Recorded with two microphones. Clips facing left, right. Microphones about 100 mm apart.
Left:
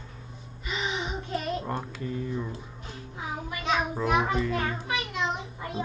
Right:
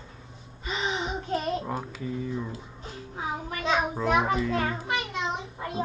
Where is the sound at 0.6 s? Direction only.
35° right (ahead or behind).